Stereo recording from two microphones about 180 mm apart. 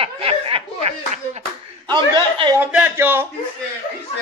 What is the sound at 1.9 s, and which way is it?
Chuckle, 25° right (ahead or behind).